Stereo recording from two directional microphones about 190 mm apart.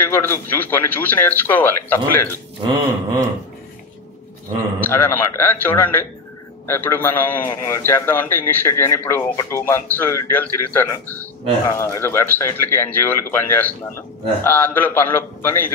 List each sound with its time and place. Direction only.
0.1 s a man's voice: 10° left (ahead or behind)
2.6 s a sound: 20° right (ahead or behind)
4.7 s a man's voice: 10° left (ahead or behind)